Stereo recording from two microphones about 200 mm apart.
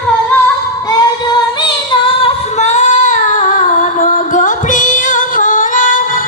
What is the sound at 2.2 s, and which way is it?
Female singing, 30° left (ahead or behind).